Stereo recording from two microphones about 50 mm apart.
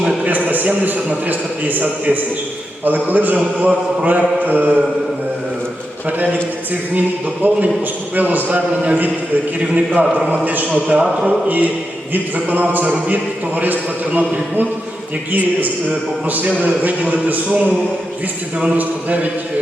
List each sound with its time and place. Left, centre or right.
0.3 s a man's voice: right
6.1 s a man's voice: right
7.4 s a man's voice: right
10.7 s a man's voice: right
11.3 s a man's voice: right